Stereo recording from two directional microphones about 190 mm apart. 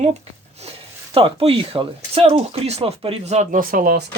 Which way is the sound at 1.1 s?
30° right (ahead or behind).